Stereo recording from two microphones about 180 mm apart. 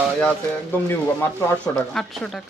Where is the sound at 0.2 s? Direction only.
5° left (ahead or behind).